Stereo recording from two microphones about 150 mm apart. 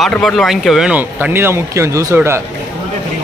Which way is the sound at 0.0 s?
Centre (ahead or behind).